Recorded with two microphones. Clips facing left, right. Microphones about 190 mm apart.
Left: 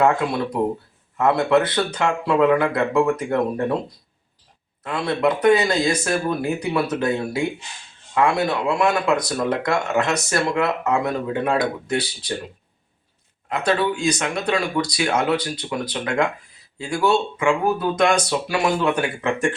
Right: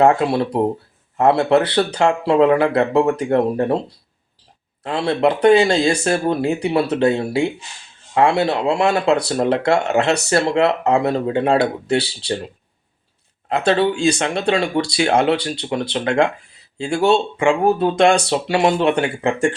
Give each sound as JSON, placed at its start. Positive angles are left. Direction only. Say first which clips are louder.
{"t": 0.0, "sound": "speech", "louder": "right 4 dB", "side_deg": -30}
{"t": 13.6, "sound": "speech", "louder": "right 4 dB", "side_deg": -30}